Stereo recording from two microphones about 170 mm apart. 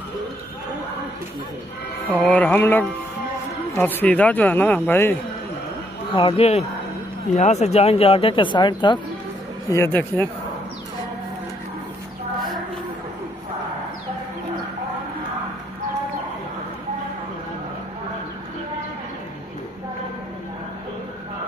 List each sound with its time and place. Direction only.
2.0 s speech: 5° left (ahead or behind)
6.1 s speech: 35° left (ahead or behind)
9.7 s speech: 15° left (ahead or behind)